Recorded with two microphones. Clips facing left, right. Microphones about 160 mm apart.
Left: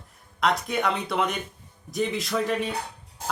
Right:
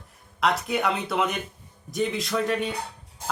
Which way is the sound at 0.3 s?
Centre (ahead or behind).